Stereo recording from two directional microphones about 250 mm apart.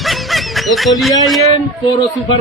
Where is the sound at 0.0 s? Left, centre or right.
Centre.